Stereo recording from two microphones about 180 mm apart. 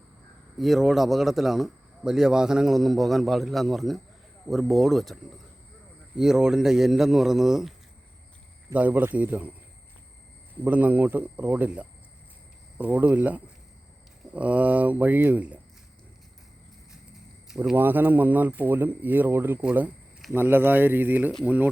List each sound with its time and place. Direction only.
0.6 s speech: centre (ahead or behind)
6.1 s speech: 5° right (ahead or behind)
8.7 s speech: 10° right (ahead or behind)
10.6 s speech: 10° right (ahead or behind)
17.5 s speech: 5° right (ahead or behind)